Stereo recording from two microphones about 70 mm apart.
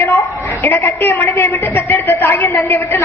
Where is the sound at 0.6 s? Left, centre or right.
Left.